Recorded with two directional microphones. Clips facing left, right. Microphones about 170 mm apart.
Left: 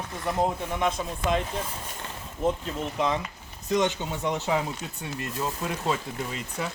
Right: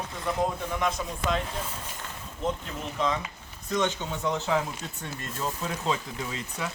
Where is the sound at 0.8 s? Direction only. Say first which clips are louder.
Left 3 dB; 25° left (ahead or behind).